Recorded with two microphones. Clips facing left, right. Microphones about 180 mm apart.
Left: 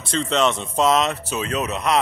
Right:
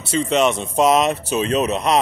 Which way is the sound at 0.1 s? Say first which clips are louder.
Right 3 dB; 10° right (ahead or behind).